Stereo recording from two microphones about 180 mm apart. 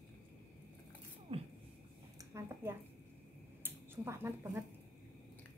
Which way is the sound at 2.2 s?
15° right (ahead or behind).